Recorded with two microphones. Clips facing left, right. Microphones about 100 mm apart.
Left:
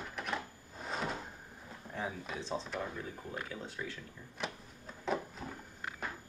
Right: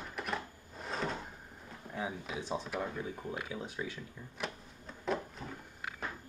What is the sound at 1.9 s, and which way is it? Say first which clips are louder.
Speech: right 1 dB; 5° right (ahead or behind).